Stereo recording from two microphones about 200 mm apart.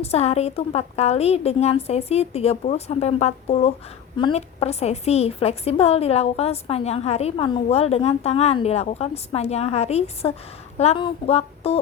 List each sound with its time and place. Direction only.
0.0 s a woman's voice: 30° left (ahead or behind)